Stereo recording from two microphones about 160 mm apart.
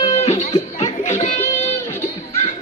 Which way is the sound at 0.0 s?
40° left (ahead or behind).